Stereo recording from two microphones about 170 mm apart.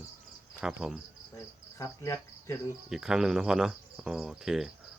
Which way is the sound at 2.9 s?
5° right (ahead or behind).